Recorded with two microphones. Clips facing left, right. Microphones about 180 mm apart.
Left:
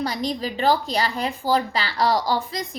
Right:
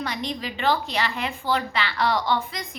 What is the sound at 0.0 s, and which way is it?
A woman's voice, 35° left (ahead or behind).